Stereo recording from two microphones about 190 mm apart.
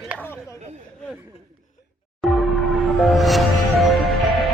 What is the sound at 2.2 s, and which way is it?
Music, centre (ahead or behind).